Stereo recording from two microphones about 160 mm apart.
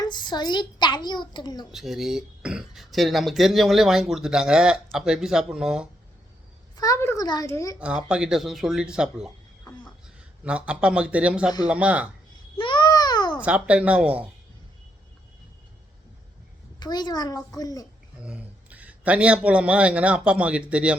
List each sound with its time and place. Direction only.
0.0 s a child's voice: 25° left (ahead or behind)
1.7 s speech: centre (ahead or behind)
6.7 s a sound: 20° left (ahead or behind)
7.3 s a woman's voice: 20° left (ahead or behind)
7.8 s a man's voice: 5° right (ahead or behind)
12.5 s babbling: 30° left (ahead or behind)
13.4 s speech: 10° right (ahead or behind)
16.8 s a woman's voice: 25° left (ahead or behind)
18.2 s a man's voice: 10° right (ahead or behind)